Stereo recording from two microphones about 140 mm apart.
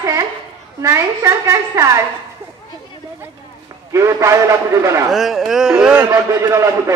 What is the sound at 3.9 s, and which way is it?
A woman's voice, 20° right (ahead or behind).